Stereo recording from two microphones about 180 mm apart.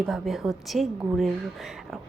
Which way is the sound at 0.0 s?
Centre (ahead or behind).